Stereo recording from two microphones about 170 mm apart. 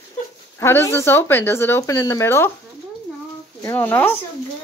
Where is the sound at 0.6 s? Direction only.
15° left (ahead or behind).